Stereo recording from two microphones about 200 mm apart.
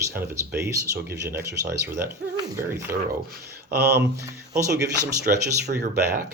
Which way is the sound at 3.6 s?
55° right (ahead or behind).